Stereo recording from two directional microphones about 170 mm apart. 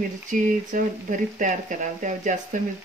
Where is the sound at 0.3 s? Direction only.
50° right (ahead or behind).